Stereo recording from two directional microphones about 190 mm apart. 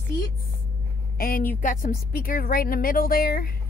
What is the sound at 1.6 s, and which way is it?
A woman's voice, 45° left (ahead or behind).